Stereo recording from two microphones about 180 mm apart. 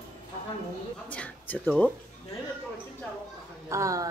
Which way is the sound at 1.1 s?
10° left (ahead or behind).